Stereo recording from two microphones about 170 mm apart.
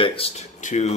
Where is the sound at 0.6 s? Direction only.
45° left (ahead or behind).